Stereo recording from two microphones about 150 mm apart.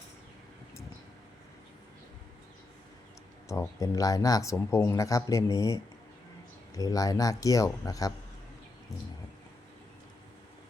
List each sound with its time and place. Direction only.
3.5 s speech: 20° left (ahead or behind)